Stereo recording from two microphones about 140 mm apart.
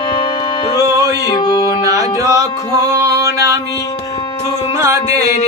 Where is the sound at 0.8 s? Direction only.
25° right (ahead or behind).